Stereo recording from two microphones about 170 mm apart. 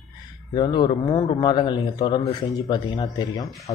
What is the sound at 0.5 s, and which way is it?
A man's voice, 25° left (ahead or behind).